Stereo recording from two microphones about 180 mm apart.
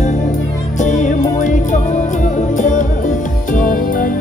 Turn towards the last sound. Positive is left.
turn(degrees=50)  # may be behind; listen again after turning